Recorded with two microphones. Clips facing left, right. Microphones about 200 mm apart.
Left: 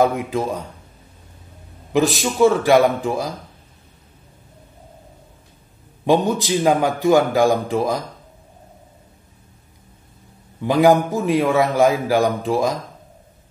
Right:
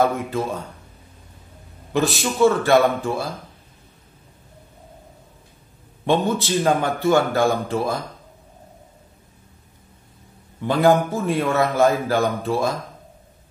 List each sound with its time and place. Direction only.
0.0 s a man's voice: 15° left (ahead or behind)
1.9 s a man's voice: 15° left (ahead or behind)
6.0 s a man's voice: 15° left (ahead or behind)
10.6 s a man's voice: 15° left (ahead or behind)